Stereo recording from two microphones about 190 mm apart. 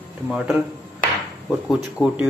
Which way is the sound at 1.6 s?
5° right (ahead or behind).